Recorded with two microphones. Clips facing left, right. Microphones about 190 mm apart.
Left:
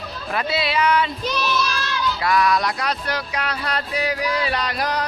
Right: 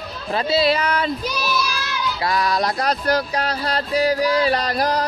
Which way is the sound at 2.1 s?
30° right (ahead or behind).